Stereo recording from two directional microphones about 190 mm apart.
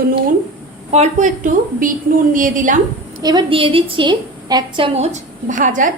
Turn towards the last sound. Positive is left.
turn(degrees=-45)  # may be behind; listen again after turning